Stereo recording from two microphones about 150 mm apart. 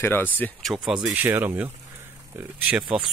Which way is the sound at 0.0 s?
15° left (ahead or behind).